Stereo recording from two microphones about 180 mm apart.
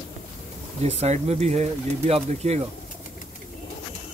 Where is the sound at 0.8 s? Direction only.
35° right (ahead or behind).